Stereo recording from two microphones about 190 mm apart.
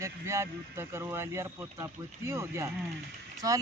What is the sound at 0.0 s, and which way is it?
Speech, 15° right (ahead or behind).